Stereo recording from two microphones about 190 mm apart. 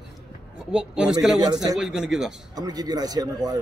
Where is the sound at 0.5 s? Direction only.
5° right (ahead or behind).